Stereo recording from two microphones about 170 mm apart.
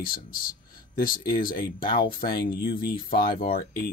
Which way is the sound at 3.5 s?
60° left (ahead or behind).